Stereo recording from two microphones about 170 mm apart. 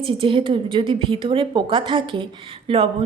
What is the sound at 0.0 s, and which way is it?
A woman's voice, 30° right (ahead or behind).